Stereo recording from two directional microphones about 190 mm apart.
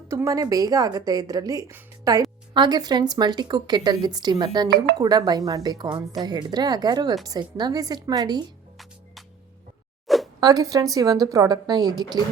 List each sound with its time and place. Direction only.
0.1 s speech: 15° right (ahead or behind)
10.1 s zipper: centre (ahead or behind)
10.4 s speech: 20° right (ahead or behind)